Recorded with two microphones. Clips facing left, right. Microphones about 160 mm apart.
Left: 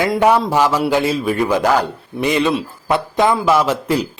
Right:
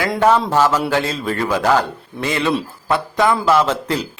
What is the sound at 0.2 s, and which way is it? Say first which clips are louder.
Speech: right 1 dB; 15° left (ahead or behind).